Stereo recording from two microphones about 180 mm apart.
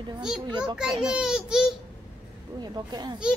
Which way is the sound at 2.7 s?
20° right (ahead or behind).